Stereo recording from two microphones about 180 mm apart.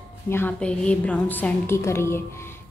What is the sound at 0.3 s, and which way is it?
A woman's voice, 10° left (ahead or behind).